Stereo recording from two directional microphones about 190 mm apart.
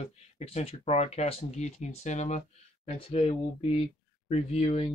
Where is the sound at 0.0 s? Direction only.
30° left (ahead or behind).